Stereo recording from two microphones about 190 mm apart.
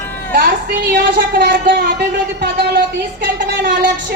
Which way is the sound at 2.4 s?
70° right (ahead or behind).